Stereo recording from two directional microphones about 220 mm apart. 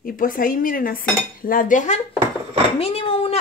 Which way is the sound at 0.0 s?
40° left (ahead or behind).